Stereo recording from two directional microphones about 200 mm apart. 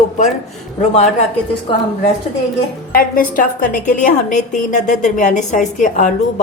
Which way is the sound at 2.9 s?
45° left (ahead or behind).